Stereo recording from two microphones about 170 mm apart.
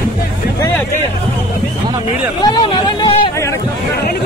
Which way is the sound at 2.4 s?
25° left (ahead or behind).